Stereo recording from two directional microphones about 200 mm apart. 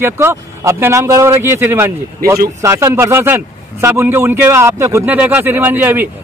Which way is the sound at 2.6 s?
15° right (ahead or behind).